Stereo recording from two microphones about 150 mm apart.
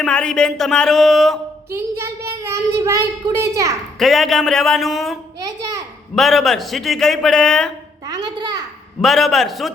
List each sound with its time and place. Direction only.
0.0 s a man's voice: 5° left (ahead or behind)
1.7 s a child's voice: 15° right (ahead or behind)
3.9 s a man's voice: centre (ahead or behind)
6.1 s a man's voice: centre (ahead or behind)
8.0 s a sound: 25° right (ahead or behind)
9.0 s a man's voice: centre (ahead or behind)